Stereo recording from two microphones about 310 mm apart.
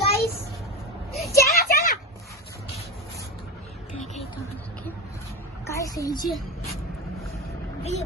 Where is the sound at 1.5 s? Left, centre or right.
Left.